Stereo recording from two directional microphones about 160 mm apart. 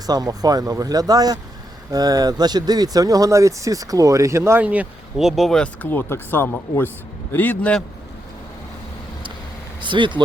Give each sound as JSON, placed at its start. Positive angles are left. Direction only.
{"t": 0.0, "sound": "a man's voice", "side_deg": -25}
{"t": 9.8, "sound": "speech", "side_deg": -30}